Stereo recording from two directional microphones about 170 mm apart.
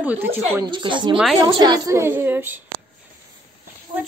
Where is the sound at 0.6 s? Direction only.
30° right (ahead or behind); by 2.6 s 10° right (ahead or behind).